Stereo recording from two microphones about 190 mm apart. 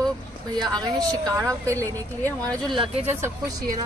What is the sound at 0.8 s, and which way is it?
A woman's voice, 20° right (ahead or behind).